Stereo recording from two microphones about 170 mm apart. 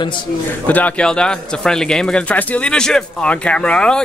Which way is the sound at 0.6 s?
10° left (ahead or behind).